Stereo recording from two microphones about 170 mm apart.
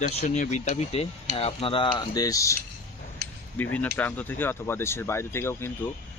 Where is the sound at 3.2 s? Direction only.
65° right (ahead or behind).